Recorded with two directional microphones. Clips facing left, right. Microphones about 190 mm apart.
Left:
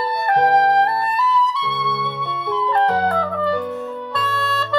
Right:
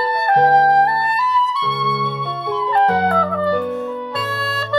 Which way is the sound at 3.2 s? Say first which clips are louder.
Right 2 dB; 45° right (ahead or behind).